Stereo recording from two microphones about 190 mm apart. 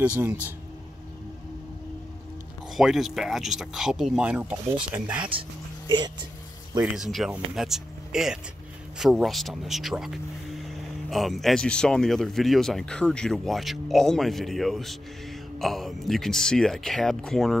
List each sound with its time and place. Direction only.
0.0 s speech: 10° right (ahead or behind)
2.7 s speech: centre (ahead or behind)
5.3 s speech: 30° right (ahead or behind)
6.8 s speech: 5° right (ahead or behind)